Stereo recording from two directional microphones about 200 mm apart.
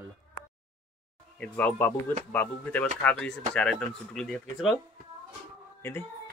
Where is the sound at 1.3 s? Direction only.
5° left (ahead or behind).